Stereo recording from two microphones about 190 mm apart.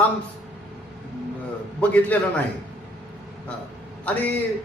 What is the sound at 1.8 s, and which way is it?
Speech, 10° left (ahead or behind).